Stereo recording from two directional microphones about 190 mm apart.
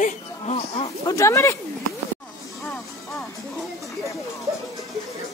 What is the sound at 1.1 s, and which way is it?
Speech, 15° left (ahead or behind).